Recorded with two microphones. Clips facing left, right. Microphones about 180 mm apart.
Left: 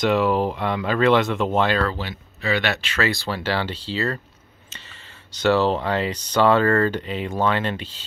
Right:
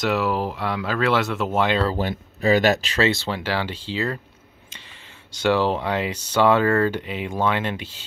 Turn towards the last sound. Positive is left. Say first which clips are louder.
# left 1 dB
turn(degrees=-10)  # may be behind; listen again after turning